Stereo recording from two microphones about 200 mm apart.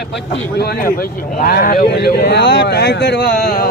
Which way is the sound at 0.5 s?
55° left (ahead or behind).